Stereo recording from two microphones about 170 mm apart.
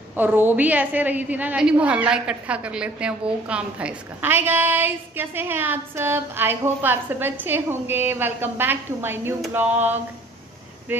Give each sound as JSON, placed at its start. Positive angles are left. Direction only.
{"t": 0.1, "sound": "a woman's voice", "side_deg": -10}
{"t": 10.9, "sound": "a woman's voice", "side_deg": -10}